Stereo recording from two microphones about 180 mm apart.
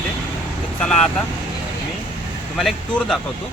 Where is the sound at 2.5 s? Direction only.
Centre (ahead or behind).